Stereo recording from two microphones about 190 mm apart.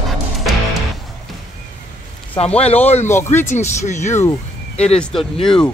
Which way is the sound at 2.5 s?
35° left (ahead or behind).